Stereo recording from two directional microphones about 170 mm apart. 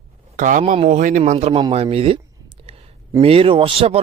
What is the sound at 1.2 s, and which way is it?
Speech, 40° right (ahead or behind).